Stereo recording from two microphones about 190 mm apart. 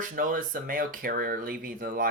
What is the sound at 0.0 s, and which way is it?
A man's voice, 45° right (ahead or behind).